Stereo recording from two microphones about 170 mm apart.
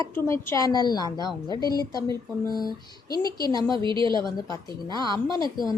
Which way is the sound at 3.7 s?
30° right (ahead or behind).